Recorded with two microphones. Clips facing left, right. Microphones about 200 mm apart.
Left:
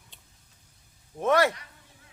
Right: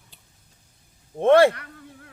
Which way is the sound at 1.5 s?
60° right (ahead or behind).